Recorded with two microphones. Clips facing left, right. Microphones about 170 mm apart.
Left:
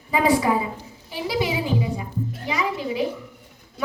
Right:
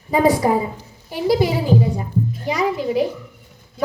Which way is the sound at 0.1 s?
45° right (ahead or behind).